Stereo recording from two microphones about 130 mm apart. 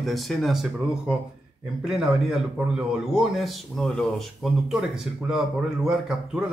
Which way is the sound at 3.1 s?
Centre (ahead or behind).